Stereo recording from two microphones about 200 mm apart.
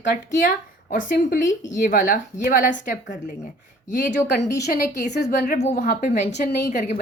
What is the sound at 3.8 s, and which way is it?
A woman's voice, 35° left (ahead or behind).